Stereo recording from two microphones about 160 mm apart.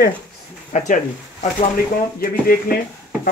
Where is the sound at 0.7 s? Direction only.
50° left (ahead or behind).